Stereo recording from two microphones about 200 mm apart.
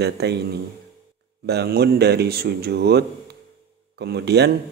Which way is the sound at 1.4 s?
55° right (ahead or behind).